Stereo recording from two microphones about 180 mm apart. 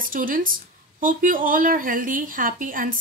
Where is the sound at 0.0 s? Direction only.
50° right (ahead or behind).